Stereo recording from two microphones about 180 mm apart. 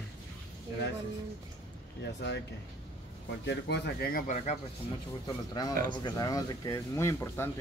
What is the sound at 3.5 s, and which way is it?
Speech, 70° left (ahead or behind).